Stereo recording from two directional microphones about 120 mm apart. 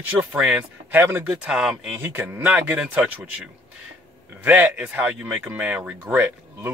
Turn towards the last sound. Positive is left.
turn(degrees=-20)  # may be behind; listen again after turning